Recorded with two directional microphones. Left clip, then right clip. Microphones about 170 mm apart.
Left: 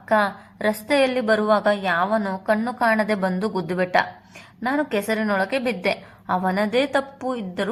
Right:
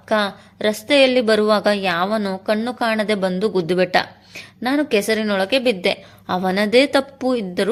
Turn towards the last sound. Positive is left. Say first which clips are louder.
# right 6 dB
turn(degrees=-50)  # may be behind; listen again after turning